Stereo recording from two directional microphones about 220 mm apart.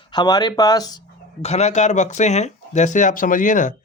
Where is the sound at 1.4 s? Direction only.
30° left (ahead or behind).